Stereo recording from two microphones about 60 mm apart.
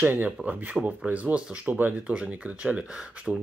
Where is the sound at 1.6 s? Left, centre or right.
Right.